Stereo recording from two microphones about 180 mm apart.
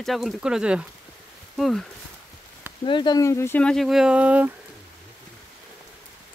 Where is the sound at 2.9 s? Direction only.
25° left (ahead or behind); by 4.5 s 10° right (ahead or behind).